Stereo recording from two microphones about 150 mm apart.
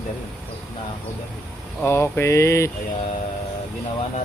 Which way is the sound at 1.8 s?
15° left (ahead or behind).